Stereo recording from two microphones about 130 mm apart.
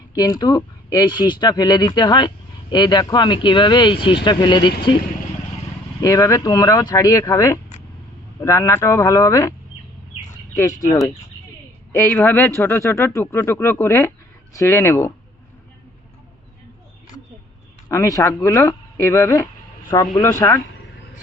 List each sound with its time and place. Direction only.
0.1 s speech: 30° left (ahead or behind)
6.0 s speech: 25° left (ahead or behind)
10.6 s speech: 25° left (ahead or behind)
11.9 s speech: 20° left (ahead or behind)
17.9 s speech: 25° left (ahead or behind)